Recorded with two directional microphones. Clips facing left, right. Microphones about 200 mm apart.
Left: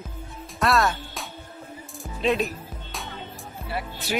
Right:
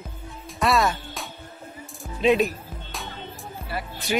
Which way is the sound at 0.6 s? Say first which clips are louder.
Right 1 dB; centre (ahead or behind).